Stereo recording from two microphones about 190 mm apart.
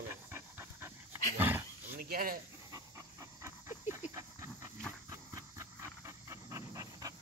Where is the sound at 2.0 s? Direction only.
50° right (ahead or behind).